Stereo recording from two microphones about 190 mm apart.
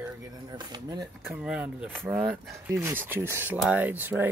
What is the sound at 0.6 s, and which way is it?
Speech, 20° right (ahead or behind).